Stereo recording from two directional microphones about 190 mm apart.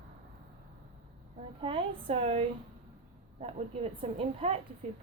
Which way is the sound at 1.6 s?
30° right (ahead or behind).